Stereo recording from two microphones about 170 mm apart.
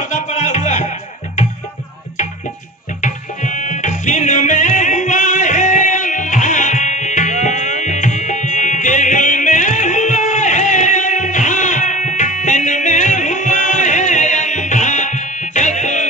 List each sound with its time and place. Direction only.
0.1 s music: 40° left (ahead or behind)
3.0 s music: 45° left (ahead or behind)